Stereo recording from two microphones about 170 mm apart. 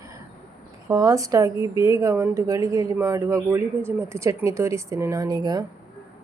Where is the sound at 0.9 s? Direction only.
20° right (ahead or behind).